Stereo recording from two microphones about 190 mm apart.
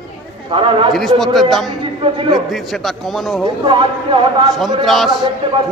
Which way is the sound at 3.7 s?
25° right (ahead or behind).